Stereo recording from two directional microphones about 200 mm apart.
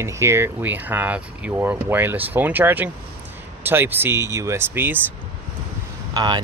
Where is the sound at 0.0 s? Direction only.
15° right (ahead or behind).